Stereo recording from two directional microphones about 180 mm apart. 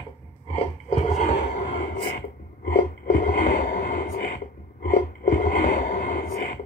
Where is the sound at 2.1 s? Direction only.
55° left (ahead or behind).